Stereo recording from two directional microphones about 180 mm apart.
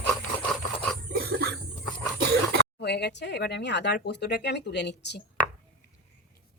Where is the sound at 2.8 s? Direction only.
65° left (ahead or behind).